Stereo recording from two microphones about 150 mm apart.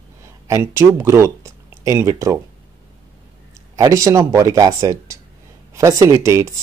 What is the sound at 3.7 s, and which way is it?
Speech, 20° right (ahead or behind).